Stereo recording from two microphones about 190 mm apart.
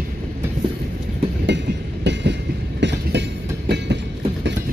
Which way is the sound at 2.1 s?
65° right (ahead or behind).